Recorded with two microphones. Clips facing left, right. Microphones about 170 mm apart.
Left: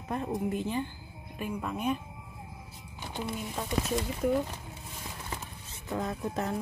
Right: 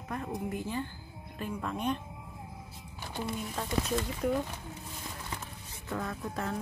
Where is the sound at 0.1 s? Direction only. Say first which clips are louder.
Left 4 dB; 25° left (ahead or behind).